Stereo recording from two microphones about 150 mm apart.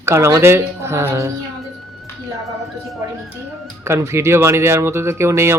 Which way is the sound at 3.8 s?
20° right (ahead or behind).